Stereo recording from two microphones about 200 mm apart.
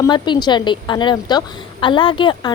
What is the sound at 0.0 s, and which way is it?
A woman's voice, 20° left (ahead or behind).